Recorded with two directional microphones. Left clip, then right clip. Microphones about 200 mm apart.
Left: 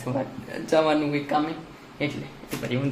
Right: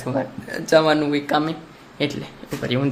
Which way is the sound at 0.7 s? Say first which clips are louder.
Right 5 dB; 45° right (ahead or behind).